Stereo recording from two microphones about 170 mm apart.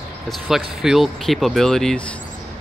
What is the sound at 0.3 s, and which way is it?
Speech, centre (ahead or behind).